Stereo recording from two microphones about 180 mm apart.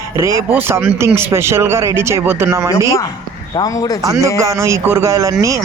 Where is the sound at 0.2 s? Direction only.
15° right (ahead or behind).